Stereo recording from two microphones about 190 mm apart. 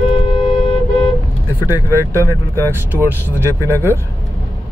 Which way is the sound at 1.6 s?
10° right (ahead or behind).